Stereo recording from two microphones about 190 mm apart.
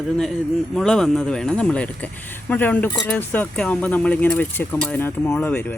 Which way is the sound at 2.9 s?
20° left (ahead or behind).